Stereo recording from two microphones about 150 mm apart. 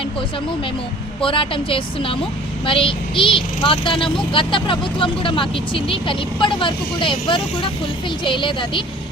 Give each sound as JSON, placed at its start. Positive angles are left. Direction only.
{"t": 1.2, "sound": "speech", "side_deg": 35}